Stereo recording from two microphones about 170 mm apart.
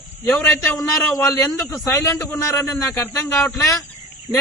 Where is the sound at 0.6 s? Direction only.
15° left (ahead or behind).